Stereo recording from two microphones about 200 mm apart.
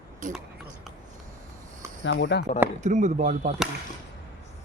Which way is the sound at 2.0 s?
65° left (ahead or behind).